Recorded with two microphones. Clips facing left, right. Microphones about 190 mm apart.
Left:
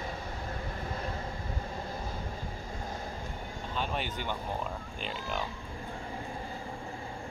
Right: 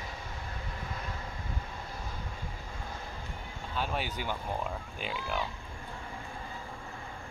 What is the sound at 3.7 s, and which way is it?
Speech, 5° right (ahead or behind).